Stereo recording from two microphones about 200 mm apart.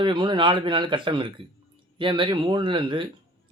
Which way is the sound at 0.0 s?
25° right (ahead or behind).